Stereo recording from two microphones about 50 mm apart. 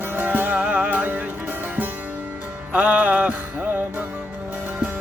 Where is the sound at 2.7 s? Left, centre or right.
Right.